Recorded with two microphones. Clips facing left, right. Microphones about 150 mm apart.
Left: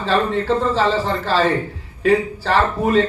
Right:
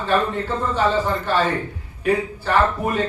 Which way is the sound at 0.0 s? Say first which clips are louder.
Left 2 dB; 90° left.